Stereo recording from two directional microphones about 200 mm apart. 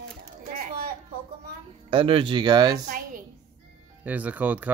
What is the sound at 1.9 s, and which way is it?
Speech, 25° right (ahead or behind).